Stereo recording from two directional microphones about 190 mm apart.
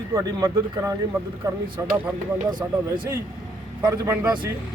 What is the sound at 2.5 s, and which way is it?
Speech, 25° right (ahead or behind).